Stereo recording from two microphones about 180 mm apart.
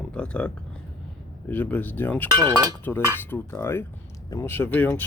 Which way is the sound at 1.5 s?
10° left (ahead or behind).